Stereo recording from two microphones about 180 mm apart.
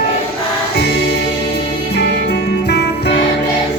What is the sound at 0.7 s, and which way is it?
Music, 60° left (ahead or behind).